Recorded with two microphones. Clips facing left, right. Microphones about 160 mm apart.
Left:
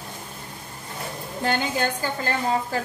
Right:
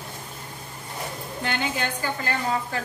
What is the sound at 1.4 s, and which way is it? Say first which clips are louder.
Speech: left 4 dB; 40° left (ahead or behind).